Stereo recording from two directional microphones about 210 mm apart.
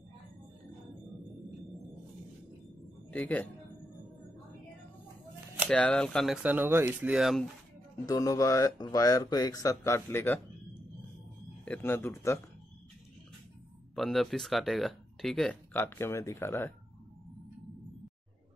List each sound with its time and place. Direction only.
3.1 s a man's voice: 5° left (ahead or behind)
5.7 s speech: 5° left (ahead or behind)
8.0 s speech: 15° left (ahead or behind)
11.6 s speech: 10° left (ahead or behind)
13.9 s speech: centre (ahead or behind)